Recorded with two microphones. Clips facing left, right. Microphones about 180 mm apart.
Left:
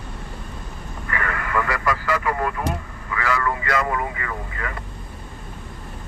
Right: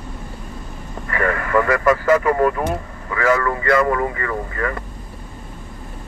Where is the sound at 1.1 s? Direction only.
40° right (ahead or behind).